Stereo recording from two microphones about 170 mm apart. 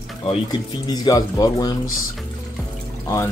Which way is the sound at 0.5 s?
25° left (ahead or behind).